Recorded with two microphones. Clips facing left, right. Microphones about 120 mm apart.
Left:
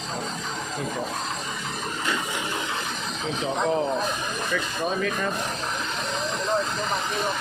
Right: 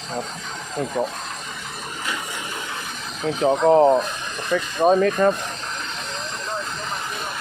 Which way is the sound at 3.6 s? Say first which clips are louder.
Right 10 dB; 45° right (ahead or behind).